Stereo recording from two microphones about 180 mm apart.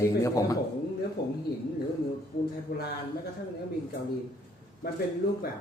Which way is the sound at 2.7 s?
70° left (ahead or behind).